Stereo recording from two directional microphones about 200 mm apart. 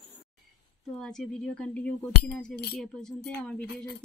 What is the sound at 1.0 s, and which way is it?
Speech, 5° left (ahead or behind).